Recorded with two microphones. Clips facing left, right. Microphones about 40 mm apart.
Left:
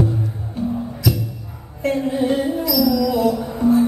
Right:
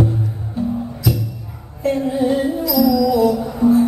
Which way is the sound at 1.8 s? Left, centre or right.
Left.